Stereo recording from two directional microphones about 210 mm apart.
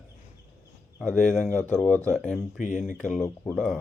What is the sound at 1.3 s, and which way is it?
Speech, 5° left (ahead or behind).